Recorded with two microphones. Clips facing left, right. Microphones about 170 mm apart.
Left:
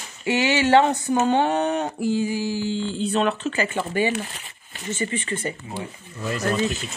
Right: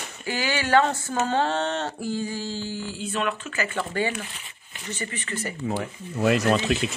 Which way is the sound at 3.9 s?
15° left (ahead or behind).